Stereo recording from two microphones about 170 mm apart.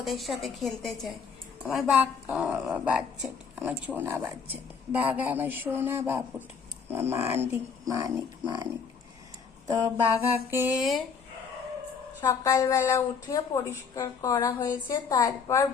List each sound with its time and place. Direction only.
0.0 s a woman's voice: centre (ahead or behind); by 8.6 s 20° right (ahead or behind)
9.6 s a woman's voice: 20° right (ahead or behind); by 11.0 s centre (ahead or behind)
12.2 s a woman's voice: 15° left (ahead or behind)